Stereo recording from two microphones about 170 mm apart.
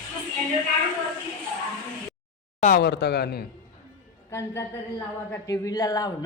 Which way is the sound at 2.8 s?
80° left.